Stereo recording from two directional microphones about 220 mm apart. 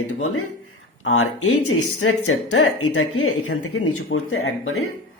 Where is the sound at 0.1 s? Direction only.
80° left.